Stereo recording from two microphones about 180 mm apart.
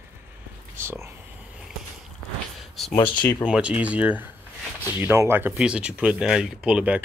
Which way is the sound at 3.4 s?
5° right (ahead or behind).